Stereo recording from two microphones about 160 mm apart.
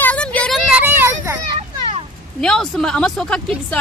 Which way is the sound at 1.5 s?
40° right (ahead or behind).